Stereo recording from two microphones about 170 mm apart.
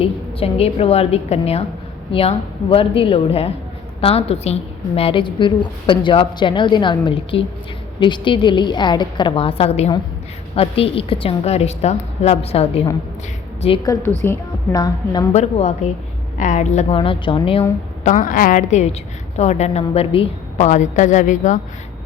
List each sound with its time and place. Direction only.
0.0 s a woman's voice: 35° left (ahead or behind)
13.8 s a woman's voice: 20° left (ahead or behind)
14.8 s a woman's voice: 25° left (ahead or behind)
15.3 s a woman's voice: 40° left (ahead or behind)
18.0 s a woman's voice: 50° left (ahead or behind)